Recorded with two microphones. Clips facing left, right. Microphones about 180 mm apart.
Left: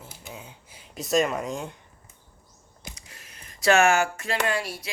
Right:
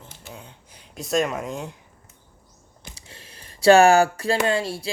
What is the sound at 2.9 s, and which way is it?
Speech, 30° right (ahead or behind).